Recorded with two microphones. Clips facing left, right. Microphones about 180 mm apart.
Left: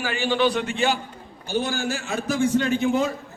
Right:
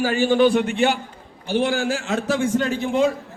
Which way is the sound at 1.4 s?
80° right.